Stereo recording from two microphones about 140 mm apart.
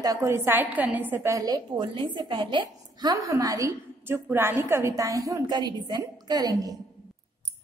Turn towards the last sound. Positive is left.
turn(degrees=-30)  # may be behind; listen again after turning